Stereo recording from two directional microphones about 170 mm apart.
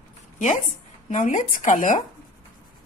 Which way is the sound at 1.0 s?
45° left (ahead or behind).